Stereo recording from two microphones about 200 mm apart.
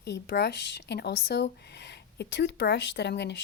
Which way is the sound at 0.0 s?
55° left (ahead or behind).